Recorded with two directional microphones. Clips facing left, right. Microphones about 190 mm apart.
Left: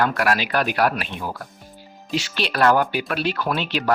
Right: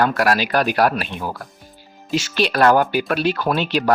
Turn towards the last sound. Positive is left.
turn(degrees=-40)  # may be behind; listen again after turning